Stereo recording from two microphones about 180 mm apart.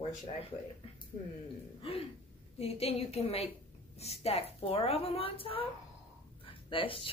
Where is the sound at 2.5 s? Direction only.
35° left (ahead or behind).